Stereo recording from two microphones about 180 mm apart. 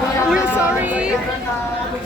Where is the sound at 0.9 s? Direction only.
5° right (ahead or behind).